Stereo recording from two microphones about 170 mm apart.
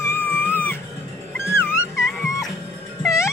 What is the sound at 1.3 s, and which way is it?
Cat, 15° left (ahead or behind).